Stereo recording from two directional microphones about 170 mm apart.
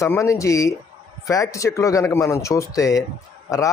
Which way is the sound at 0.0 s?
15° left (ahead or behind).